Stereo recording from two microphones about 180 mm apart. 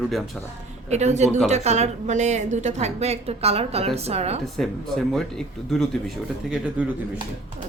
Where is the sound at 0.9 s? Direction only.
40° right (ahead or behind).